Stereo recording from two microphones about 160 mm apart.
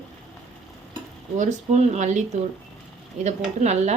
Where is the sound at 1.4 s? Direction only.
45° right (ahead or behind).